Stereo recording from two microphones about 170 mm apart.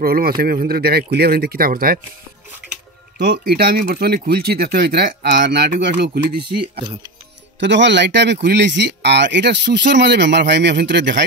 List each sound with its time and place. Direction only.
0.0 s speech: 60° right (ahead or behind)
3.2 s speech: 65° right (ahead or behind)
7.6 s speech: 90° right